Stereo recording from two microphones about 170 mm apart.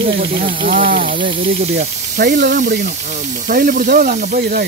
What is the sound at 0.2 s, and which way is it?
Speech, 55° right (ahead or behind).